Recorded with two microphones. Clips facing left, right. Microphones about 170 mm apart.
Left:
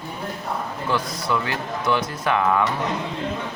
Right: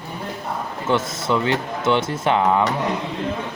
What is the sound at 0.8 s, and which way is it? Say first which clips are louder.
Speech: right 4 dB; 25° right (ahead or behind).